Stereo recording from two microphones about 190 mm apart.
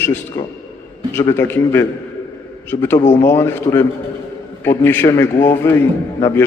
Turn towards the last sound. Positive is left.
turn(degrees=15)  # may be behind; listen again after turning